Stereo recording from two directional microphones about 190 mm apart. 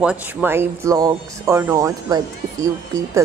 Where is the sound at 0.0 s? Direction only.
10° right (ahead or behind).